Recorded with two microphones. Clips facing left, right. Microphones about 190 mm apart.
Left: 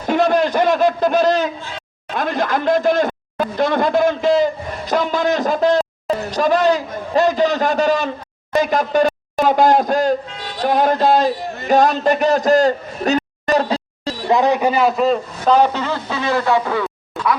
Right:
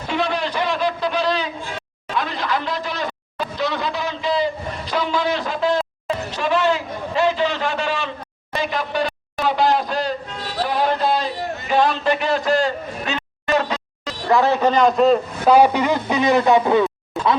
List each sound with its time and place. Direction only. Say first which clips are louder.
0.1 s a sound: left 7 dB; 45° left (ahead or behind)
2.1 s speech: left 4 dB; 50° left (ahead or behind); by 14.2 s 30° left (ahead or behind)
14.3 s a man's voice: left 1 dB; 15° left (ahead or behind); by 15.5 s centre (ahead or behind)
15.5 s a man's voice: right 2 dB; 10° right (ahead or behind)